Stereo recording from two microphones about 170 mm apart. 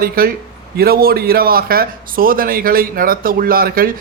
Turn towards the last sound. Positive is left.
turn(degrees=-60)  # may be behind; listen again after turning